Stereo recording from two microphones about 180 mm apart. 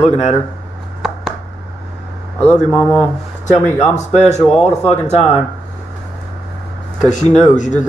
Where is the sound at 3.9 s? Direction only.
40° left (ahead or behind).